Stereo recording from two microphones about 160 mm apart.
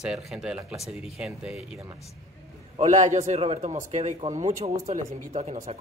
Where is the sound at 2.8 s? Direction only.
50° right (ahead or behind).